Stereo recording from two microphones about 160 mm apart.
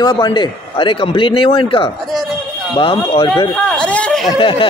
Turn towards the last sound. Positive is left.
turn(degrees=30)  # may be behind; listen again after turning